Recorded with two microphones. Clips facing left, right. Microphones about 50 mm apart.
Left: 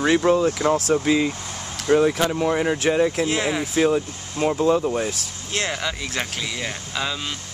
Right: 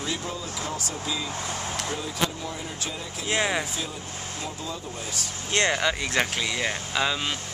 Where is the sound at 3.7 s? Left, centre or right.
Left.